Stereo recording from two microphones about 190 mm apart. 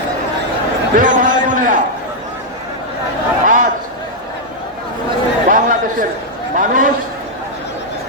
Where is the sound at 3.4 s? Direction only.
45° right (ahead or behind).